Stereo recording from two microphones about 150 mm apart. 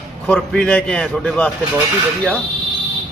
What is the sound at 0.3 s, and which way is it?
A man's voice, 5° left (ahead or behind).